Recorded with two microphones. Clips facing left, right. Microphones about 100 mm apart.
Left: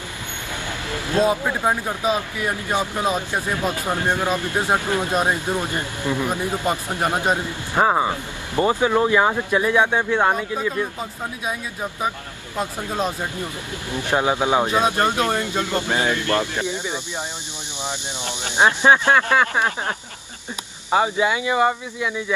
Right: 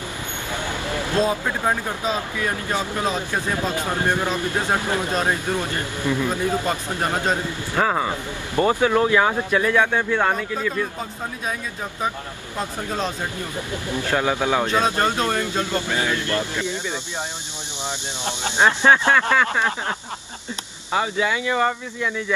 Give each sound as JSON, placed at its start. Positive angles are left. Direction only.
{"t": 1.2, "sound": "speech", "side_deg": 15}
{"t": 12.5, "sound": "speech", "side_deg": 10}
{"t": 18.6, "sound": "speech", "side_deg": 15}
{"t": 20.9, "sound": "speech", "side_deg": 20}